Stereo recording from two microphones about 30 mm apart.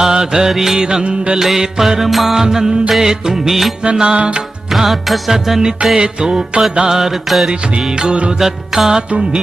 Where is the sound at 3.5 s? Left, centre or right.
Centre.